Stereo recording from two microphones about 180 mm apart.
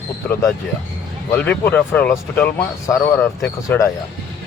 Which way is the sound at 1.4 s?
10° left (ahead or behind).